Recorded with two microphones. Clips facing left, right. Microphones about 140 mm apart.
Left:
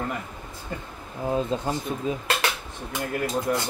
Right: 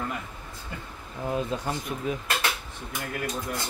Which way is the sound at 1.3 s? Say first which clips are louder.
Left 3 dB; 25° left (ahead or behind).